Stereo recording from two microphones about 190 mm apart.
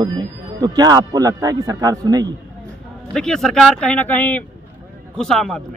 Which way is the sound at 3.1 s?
5° left (ahead or behind).